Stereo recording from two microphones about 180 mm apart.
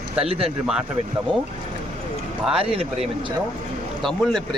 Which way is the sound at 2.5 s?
30° right (ahead or behind).